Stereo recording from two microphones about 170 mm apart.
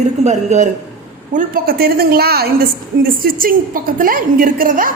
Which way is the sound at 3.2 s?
55° right (ahead or behind).